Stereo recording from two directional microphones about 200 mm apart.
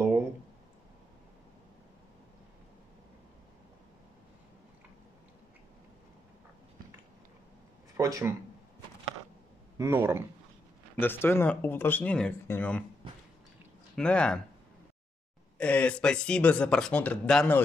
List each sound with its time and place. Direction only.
8.0 s speech: 15° right (ahead or behind)
9.8 s speech: 15° right (ahead or behind)
11.0 s speech: 10° left (ahead or behind)
13.9 s speech: 5° left (ahead or behind)
15.5 s speech: 5° left (ahead or behind)